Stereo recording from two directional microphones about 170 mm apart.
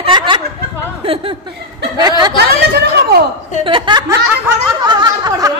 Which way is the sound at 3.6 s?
30° right (ahead or behind).